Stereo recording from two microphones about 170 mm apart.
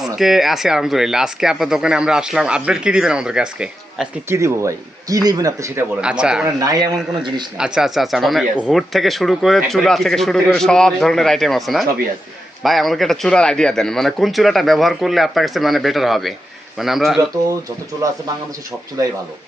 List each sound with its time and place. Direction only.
0.0 s speech: centre (ahead or behind)
4.3 s speech: 15° right (ahead or behind)
6.0 s speech: 5° right (ahead or behind)
6.6 s speech: 20° right (ahead or behind)
7.6 s speech: centre (ahead or behind)
18.0 s speech: 20° right (ahead or behind)